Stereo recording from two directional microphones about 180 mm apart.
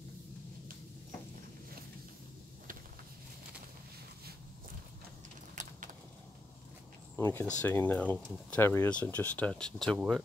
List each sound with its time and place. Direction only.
7.2 s speech: 15° left (ahead or behind); by 10.2 s centre (ahead or behind)